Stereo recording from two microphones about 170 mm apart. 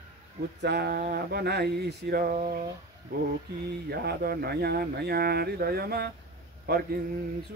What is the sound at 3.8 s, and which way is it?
Speech, 65° right (ahead or behind).